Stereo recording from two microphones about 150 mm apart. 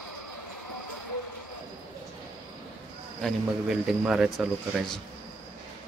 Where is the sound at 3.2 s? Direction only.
Centre (ahead or behind).